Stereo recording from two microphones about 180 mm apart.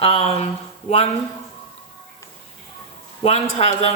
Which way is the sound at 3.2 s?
35° left (ahead or behind).